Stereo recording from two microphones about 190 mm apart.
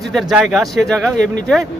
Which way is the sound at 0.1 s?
Centre (ahead or behind).